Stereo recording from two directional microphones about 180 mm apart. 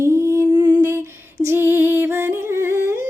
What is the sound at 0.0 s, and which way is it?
Lullaby, 15° right (ahead or behind).